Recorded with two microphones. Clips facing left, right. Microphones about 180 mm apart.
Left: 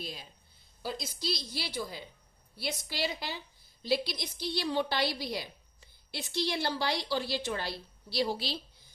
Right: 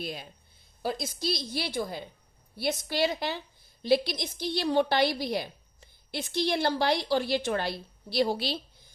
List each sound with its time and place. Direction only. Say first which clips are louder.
0.0 s a woman's voice: right 6 dB; 60° right (ahead or behind)